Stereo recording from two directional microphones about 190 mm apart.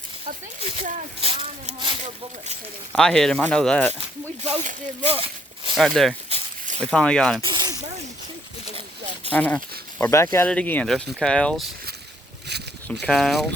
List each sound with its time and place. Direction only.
0.8 s speech: 40° right (ahead or behind)
2.9 s speech: 5° left (ahead or behind)
4.4 s speech: 35° right (ahead or behind)
5.0 s a sound: 30° right (ahead or behind)
5.7 s speech: centre (ahead or behind)
6.2 s a sound: 35° right (ahead or behind)
6.9 s speech: 5° left (ahead or behind)
7.4 s snake: 20° right (ahead or behind)
8.7 s a sound: 35° right (ahead or behind)
9.3 s speech: 10° left (ahead or behind)
13.1 s speech: centre (ahead or behind)